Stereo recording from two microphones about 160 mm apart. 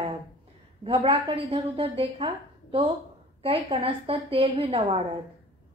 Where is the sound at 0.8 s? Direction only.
35° right (ahead or behind).